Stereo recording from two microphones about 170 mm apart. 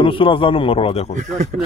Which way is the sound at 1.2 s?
45° right (ahead or behind).